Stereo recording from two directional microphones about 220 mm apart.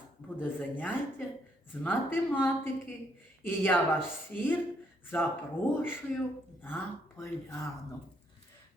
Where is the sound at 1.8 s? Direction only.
10° left (ahead or behind).